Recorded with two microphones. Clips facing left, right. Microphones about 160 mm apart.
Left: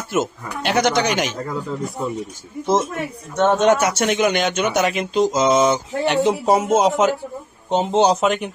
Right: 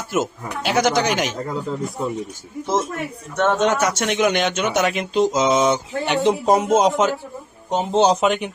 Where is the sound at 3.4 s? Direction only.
15° left (ahead or behind).